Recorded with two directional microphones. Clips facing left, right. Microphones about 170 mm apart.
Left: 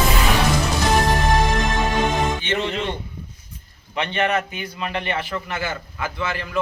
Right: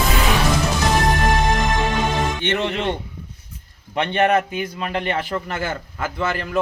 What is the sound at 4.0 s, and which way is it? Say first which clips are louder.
A man's voice: right 4 dB; 50° right (ahead or behind).